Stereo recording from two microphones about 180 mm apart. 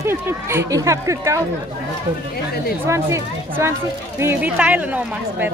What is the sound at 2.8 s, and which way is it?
Speech, 15° right (ahead or behind).